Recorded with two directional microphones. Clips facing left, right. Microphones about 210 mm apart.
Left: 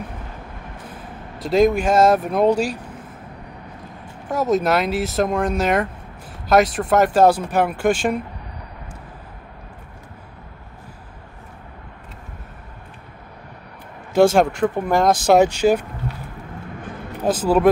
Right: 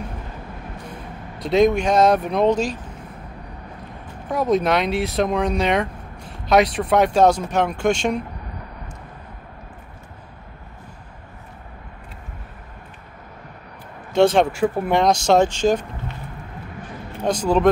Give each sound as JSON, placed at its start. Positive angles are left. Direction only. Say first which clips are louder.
{"t": 1.4, "sound": "speech", "louder": "even", "side_deg": 0}
{"t": 4.3, "sound": "speech", "louder": "even", "side_deg": 0}
{"t": 14.1, "sound": "speech", "louder": "left 1 dB", "side_deg": 5}
{"t": 17.2, "sound": "speech", "louder": "left 1 dB", "side_deg": 5}